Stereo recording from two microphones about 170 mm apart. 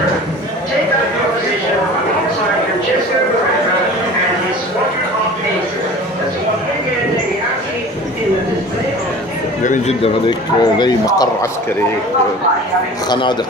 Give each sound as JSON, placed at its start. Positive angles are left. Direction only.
{"t": 9.6, "sound": "a sound", "side_deg": 50}
{"t": 10.0, "sound": "speech", "side_deg": 25}
{"t": 13.1, "sound": "speech", "side_deg": 25}